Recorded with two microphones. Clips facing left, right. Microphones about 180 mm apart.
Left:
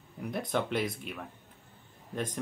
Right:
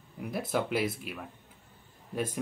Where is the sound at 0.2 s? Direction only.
5° right (ahead or behind).